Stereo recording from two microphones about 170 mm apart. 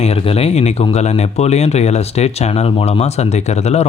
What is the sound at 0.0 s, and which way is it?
Speech, 35° left (ahead or behind).